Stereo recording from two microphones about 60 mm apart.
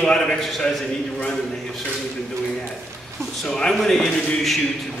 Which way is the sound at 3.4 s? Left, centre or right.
Centre.